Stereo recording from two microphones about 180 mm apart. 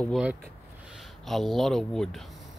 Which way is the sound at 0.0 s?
5° right (ahead or behind).